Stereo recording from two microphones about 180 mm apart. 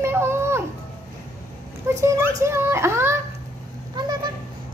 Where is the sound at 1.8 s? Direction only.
15° right (ahead or behind).